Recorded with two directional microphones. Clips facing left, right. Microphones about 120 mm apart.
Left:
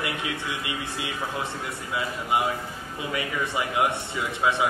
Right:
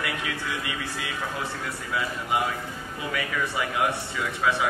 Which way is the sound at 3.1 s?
20° left (ahead or behind).